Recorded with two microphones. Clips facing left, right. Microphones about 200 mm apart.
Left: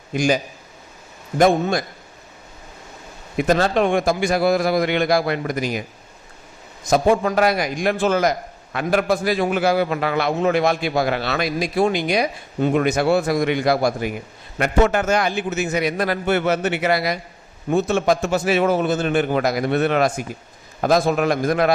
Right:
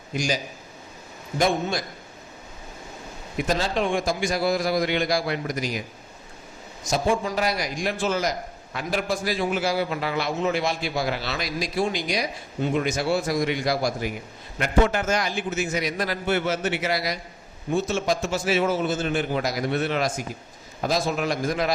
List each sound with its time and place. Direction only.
1.4 s a man's voice: 55° left (ahead or behind)
3.4 s a man's voice: 55° left (ahead or behind)
6.9 s a man's voice: 55° left (ahead or behind)